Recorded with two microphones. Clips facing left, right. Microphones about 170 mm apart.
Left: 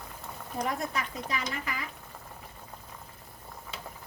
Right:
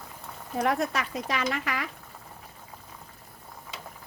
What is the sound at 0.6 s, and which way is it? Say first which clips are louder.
Speech: right 6 dB; 75° right (ahead or behind).